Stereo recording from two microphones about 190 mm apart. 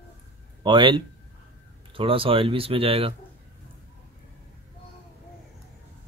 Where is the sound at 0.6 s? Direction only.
25° right (ahead or behind).